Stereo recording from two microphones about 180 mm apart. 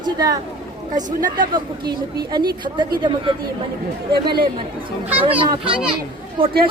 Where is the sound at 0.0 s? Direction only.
20° right (ahead or behind).